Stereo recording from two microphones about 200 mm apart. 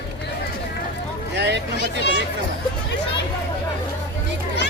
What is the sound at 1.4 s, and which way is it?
Speech, 60° right (ahead or behind).